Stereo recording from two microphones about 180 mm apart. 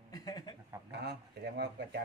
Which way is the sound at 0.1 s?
20° left (ahead or behind).